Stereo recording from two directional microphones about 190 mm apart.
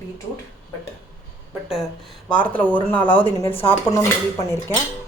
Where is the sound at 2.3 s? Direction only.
10° left (ahead or behind).